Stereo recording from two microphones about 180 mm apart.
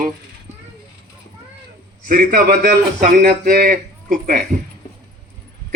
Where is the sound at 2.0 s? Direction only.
50° right (ahead or behind).